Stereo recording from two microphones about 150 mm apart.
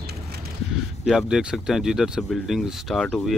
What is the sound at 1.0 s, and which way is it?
Speech, centre (ahead or behind).